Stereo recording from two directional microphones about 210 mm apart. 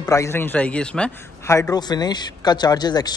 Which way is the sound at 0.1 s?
10° left (ahead or behind).